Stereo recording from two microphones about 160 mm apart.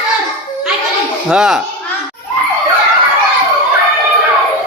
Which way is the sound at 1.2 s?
5° right (ahead or behind).